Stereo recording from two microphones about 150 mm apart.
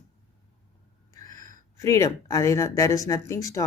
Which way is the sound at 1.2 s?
25° left (ahead or behind).